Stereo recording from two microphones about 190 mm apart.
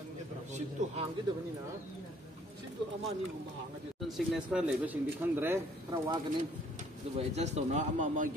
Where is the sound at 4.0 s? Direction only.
5° right (ahead or behind).